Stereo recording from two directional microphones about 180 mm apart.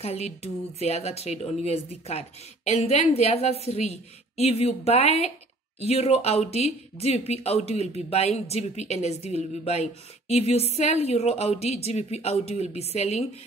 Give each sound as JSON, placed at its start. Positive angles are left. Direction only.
{"t": 0.0, "sound": "speech", "side_deg": 35}